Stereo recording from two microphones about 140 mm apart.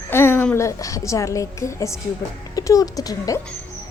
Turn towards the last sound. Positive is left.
turn(degrees=25)  # may be behind; listen again after turning